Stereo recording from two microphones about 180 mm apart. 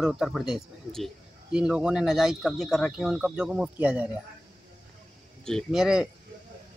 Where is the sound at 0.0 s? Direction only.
Centre (ahead or behind).